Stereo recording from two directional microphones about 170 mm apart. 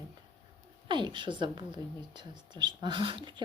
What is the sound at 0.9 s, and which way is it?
Speech, 30° right (ahead or behind).